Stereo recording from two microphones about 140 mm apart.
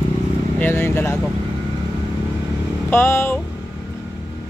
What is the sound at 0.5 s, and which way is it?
Speech, 15° left (ahead or behind).